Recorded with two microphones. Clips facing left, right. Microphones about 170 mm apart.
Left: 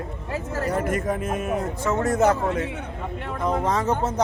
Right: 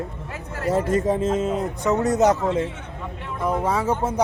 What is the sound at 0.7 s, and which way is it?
Speech, 25° right (ahead or behind).